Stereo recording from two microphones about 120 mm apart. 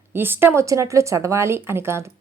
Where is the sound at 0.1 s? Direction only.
15° right (ahead or behind).